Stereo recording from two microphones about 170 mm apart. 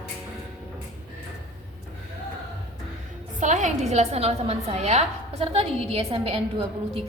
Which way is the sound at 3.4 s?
45° right (ahead or behind).